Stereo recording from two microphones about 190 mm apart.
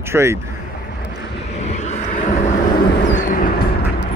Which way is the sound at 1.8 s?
40° left (ahead or behind).